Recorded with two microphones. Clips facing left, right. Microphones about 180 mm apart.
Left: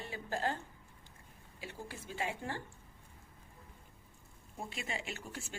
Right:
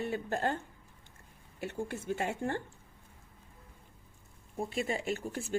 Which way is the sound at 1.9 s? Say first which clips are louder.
Right 4 dB; 55° right (ahead or behind).